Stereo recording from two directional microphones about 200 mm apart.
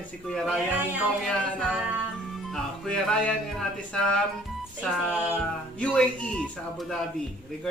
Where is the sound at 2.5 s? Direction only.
Centre (ahead or behind).